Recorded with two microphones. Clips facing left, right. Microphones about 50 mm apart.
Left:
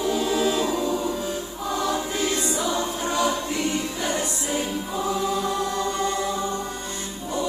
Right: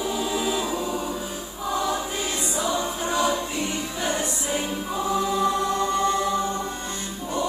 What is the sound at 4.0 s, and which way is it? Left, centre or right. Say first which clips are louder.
Music: even; right.